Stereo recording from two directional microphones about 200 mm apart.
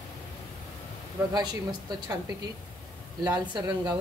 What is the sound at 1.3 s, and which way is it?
A woman's voice, 20° right (ahead or behind).